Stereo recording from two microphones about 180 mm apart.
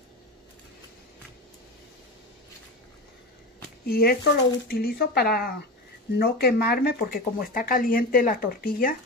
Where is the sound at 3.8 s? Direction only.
55° left (ahead or behind).